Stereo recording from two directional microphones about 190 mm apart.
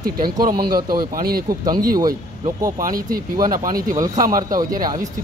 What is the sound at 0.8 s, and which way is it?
Speech, 50° right (ahead or behind).